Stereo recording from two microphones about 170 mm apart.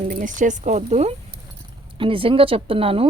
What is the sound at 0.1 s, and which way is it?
Speech, 50° right (ahead or behind).